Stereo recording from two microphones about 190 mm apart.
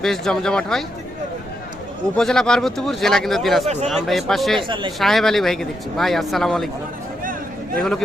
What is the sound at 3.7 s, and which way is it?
Speech, 35° right (ahead or behind).